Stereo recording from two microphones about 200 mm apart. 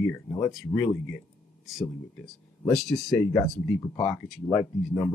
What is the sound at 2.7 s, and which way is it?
Speech, centre (ahead or behind).